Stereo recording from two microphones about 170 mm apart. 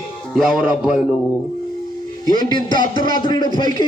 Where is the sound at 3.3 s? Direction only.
25° left (ahead or behind).